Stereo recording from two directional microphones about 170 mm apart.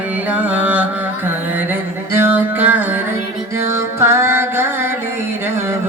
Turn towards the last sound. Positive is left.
turn(degrees=-15)  # may be behind; listen again after turning